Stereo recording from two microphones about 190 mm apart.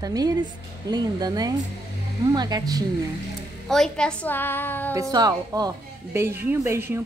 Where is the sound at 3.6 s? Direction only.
Centre (ahead or behind).